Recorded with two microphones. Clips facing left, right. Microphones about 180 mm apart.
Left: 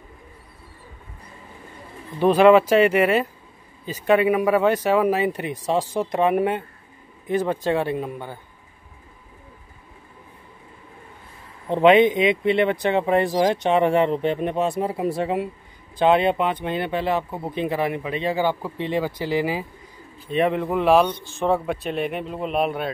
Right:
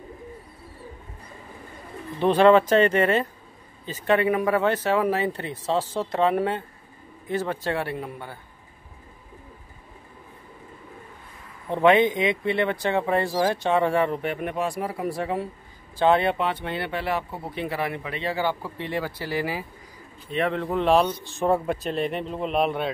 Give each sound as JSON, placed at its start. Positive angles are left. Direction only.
{"t": 2.1, "sound": "speech", "side_deg": 10}
{"t": 11.7, "sound": "speech", "side_deg": 20}